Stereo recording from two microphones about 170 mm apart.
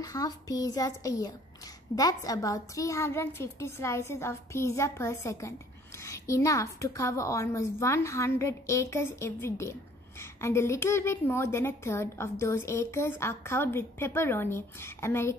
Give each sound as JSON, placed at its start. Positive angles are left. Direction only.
{"t": 0.0, "sound": "a child's voice", "side_deg": 20}